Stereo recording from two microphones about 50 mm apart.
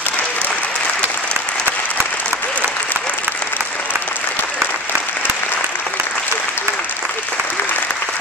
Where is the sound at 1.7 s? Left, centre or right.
Right.